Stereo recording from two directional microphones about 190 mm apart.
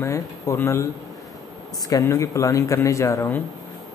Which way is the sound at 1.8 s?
15° left (ahead or behind).